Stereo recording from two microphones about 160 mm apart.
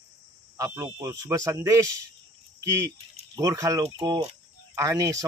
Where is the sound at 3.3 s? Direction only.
20° right (ahead or behind).